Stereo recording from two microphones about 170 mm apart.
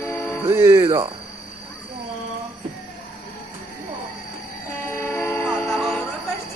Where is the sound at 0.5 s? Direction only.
20° right (ahead or behind).